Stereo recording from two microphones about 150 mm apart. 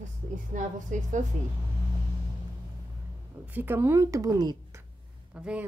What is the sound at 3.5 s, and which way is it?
A woman's voice, 15° right (ahead or behind).